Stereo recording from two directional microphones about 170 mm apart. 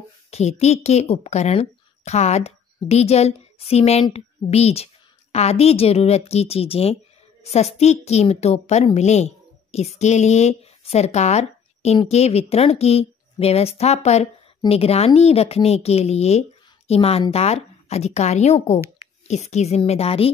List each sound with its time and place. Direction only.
0.3 s a child's voice: 40° left (ahead or behind)